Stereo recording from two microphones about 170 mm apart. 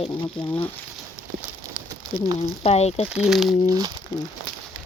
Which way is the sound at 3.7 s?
20° right (ahead or behind).